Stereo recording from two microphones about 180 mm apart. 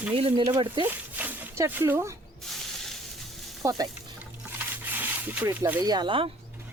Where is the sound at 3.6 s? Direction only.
20° right (ahead or behind).